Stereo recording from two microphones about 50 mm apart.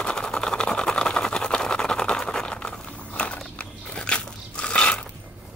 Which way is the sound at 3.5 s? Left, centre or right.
Centre.